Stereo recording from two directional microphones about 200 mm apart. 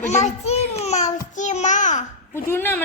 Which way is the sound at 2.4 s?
10° left (ahead or behind).